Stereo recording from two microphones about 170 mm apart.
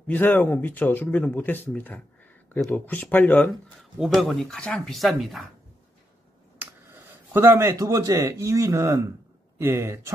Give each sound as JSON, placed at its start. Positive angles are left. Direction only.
{"t": 0.1, "sound": "speech", "side_deg": 10}
{"t": 4.0, "sound": "speech", "side_deg": 0}
{"t": 6.6, "sound": "speech", "side_deg": -15}